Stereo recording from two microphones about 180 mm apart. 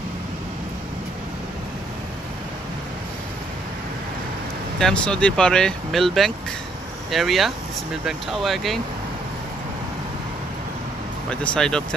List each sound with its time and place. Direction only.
4.7 s speech: 5° left (ahead or behind)
11.2 s speech: 5° left (ahead or behind)